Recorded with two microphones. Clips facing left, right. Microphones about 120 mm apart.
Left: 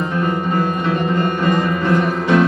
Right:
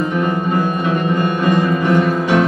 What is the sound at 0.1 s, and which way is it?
Music, 15° right (ahead or behind).